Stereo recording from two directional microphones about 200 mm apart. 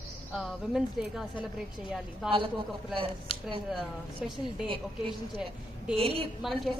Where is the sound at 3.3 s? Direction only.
30° left (ahead or behind).